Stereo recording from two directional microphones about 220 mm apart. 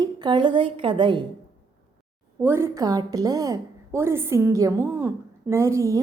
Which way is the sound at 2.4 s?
10° right (ahead or behind).